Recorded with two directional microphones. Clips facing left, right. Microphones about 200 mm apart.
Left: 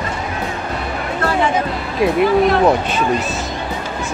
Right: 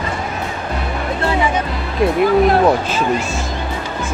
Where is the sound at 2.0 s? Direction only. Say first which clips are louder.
Right 1 dB; centre (ahead or behind).